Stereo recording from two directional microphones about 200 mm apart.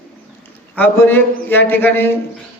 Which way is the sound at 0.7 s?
10° left (ahead or behind).